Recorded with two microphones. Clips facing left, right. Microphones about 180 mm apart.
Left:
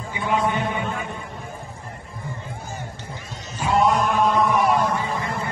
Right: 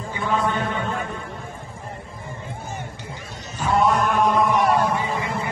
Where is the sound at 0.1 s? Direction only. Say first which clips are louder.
Left 1 dB; 15° left (ahead or behind).